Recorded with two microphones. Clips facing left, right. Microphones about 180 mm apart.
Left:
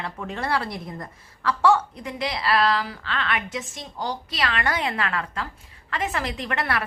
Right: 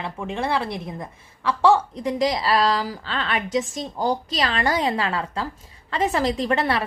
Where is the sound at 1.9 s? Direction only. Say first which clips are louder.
Right 7 dB; 35° right (ahead or behind).